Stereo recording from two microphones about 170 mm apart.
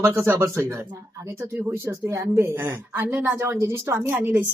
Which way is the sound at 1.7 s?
15° right (ahead or behind).